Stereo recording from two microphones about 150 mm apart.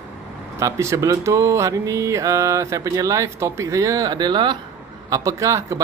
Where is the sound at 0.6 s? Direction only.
20° right (ahead or behind).